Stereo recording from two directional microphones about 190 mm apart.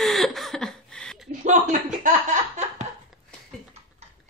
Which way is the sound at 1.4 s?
40° right (ahead or behind).